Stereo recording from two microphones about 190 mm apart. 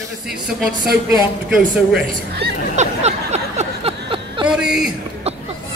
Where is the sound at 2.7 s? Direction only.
35° right (ahead or behind).